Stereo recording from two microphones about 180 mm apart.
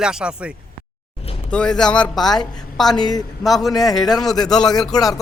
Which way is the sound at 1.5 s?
5° left (ahead or behind).